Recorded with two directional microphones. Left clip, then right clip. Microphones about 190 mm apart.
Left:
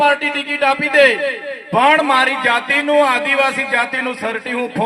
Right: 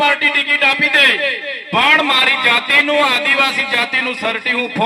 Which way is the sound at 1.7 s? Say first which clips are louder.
Even; 30° left (ahead or behind).